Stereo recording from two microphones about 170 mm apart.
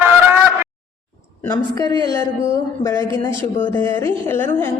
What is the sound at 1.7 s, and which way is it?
Speech, 25° left (ahead or behind).